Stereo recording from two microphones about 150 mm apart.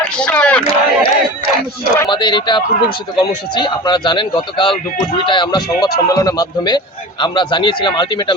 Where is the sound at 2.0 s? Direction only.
30° left (ahead or behind).